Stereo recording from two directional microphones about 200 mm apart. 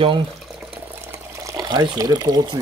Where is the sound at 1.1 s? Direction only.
15° right (ahead or behind).